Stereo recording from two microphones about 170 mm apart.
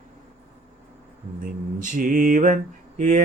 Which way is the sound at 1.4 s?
50° right (ahead or behind).